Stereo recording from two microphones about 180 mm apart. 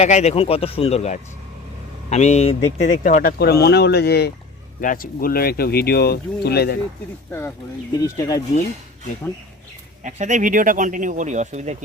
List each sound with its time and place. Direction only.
0.0 s speech: 40° left (ahead or behind); by 4.3 s 65° left (ahead or behind)
4.8 s speech: 50° left (ahead or behind)
7.3 s speech: 10° left (ahead or behind)
10.0 s speech: 45° right (ahead or behind)